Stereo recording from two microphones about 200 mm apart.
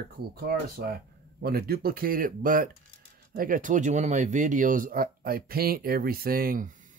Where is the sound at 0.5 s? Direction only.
50° right (ahead or behind).